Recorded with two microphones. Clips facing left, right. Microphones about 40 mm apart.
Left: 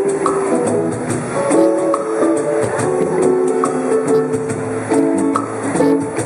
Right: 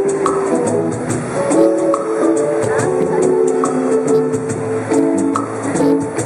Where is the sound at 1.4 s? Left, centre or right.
Centre.